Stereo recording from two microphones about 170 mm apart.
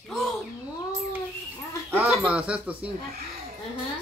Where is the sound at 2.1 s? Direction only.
5° right (ahead or behind).